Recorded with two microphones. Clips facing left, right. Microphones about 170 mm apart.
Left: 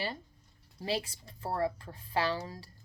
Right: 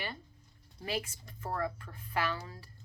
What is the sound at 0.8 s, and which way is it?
Speech, 35° left (ahead or behind).